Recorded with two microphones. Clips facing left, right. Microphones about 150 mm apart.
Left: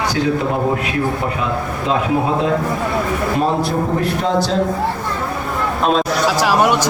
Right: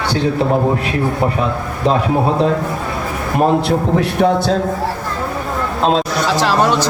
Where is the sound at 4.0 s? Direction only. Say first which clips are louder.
Right 4 dB; 60° right (ahead or behind).